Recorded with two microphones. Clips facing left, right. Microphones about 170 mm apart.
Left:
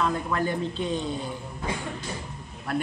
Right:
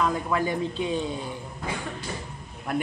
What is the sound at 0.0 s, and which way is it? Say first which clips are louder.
A man's voice: right 1 dB; 10° right (ahead or behind).